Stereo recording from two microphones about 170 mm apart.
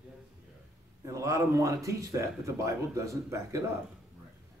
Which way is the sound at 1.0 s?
20° right (ahead or behind).